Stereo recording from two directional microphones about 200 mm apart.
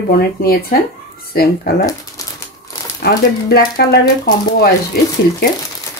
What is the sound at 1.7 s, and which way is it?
Speech, 55° left (ahead or behind).